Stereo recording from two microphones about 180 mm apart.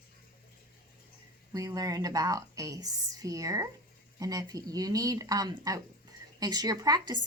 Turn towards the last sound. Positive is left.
turn(degrees=-20)  # may be behind; listen again after turning